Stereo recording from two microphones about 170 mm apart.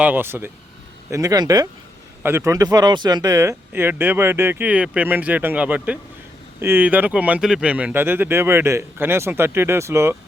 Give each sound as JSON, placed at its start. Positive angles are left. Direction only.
{"t": 0.0, "sound": "speech", "side_deg": -10}